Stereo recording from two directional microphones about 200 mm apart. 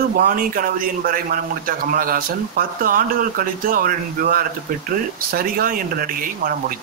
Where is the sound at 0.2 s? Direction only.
45° right (ahead or behind).